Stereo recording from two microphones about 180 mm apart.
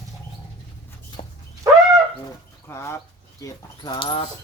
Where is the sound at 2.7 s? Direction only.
15° left (ahead or behind).